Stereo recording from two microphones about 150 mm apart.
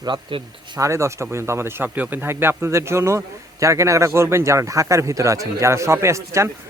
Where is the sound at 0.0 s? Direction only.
35° right (ahead or behind).